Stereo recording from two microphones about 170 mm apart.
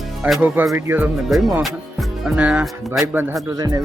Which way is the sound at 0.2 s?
5° right (ahead or behind).